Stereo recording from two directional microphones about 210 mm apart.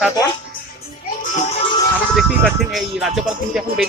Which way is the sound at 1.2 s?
35° left (ahead or behind).